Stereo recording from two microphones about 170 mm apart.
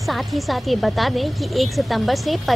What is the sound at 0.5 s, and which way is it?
A woman's voice, centre (ahead or behind).